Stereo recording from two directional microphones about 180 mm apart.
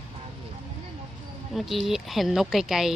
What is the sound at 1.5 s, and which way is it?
Speech, centre (ahead or behind).